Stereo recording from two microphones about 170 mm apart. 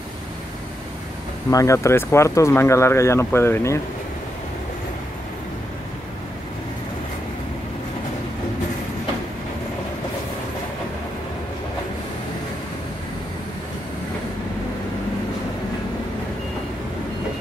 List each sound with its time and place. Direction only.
1.5 s speech: 20° left (ahead or behind)